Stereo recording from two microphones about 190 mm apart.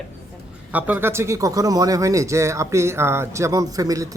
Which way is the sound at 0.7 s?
10° right (ahead or behind).